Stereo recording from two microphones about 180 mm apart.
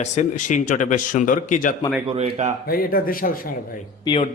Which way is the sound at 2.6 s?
55° left (ahead or behind).